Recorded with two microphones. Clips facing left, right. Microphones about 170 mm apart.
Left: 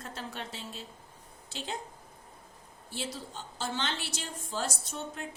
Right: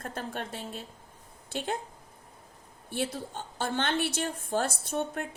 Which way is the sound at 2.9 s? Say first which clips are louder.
Right 6 dB; 55° right (ahead or behind).